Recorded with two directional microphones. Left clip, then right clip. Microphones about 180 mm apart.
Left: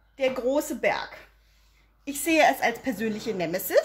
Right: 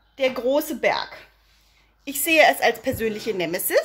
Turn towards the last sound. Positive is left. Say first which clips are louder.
# right 2 dB
turn(degrees=-10)  # may be behind; listen again after turning